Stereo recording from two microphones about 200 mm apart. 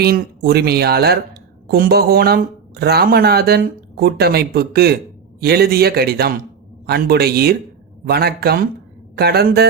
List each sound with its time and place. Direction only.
0.0 s speech: 50° right (ahead or behind)